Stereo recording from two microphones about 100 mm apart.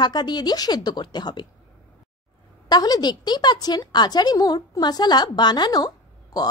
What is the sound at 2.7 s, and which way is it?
A woman's voice, 40° left (ahead or behind).